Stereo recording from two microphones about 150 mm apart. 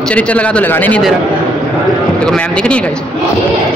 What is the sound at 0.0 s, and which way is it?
A man's voice, 5° left (ahead or behind).